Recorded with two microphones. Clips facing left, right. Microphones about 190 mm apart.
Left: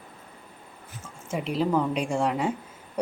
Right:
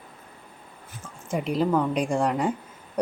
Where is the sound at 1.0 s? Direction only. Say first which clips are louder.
Right 3 dB; 5° left (ahead or behind).